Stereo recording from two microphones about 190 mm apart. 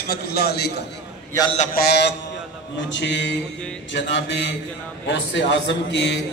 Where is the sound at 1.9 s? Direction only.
65° left (ahead or behind).